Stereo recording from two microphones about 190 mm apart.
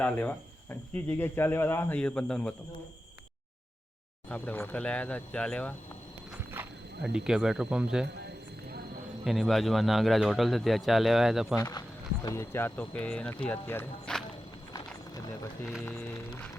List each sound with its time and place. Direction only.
0.0 s speech: 10° left (ahead or behind)
4.3 s speech: 10° left (ahead or behind)
7.3 s speech: centre (ahead or behind)
8.0 s a sound: 60° right (ahead or behind)
9.2 s speech: centre (ahead or behind)
11.5 s speech: 20° left (ahead or behind)
14.7 s a sound: 20° left (ahead or behind)
15.9 s speech: 10° left (ahead or behind)